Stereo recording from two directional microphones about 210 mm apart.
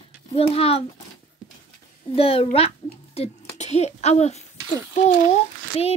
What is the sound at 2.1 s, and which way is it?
A child's voice, 25° left (ahead or behind).